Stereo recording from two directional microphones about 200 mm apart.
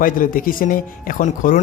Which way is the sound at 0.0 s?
45° left (ahead or behind).